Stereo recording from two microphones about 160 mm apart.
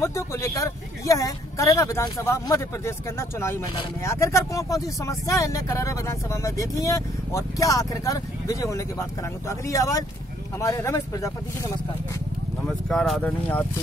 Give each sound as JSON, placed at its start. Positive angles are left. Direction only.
{"t": 0.0, "sound": "speech", "side_deg": 20}
{"t": 12.6, "sound": "speech", "side_deg": 5}